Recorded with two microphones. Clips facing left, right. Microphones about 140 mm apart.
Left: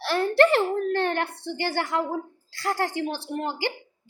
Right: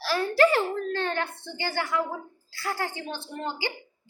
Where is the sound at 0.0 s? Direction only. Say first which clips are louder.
Left 2 dB; 60° left (ahead or behind).